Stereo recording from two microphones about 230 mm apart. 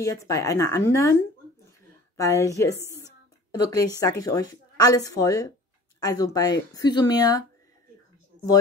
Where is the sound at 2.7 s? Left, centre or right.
Centre.